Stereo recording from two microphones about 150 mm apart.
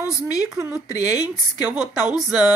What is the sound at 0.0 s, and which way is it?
A woman's voice, 20° left (ahead or behind).